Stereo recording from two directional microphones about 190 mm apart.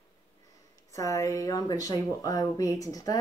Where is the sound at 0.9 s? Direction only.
15° left (ahead or behind).